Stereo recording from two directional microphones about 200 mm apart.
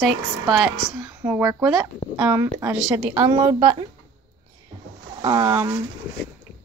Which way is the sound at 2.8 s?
5° right (ahead or behind).